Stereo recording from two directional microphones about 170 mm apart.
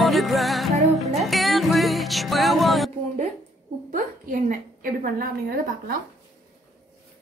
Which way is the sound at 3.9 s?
50° right (ahead or behind).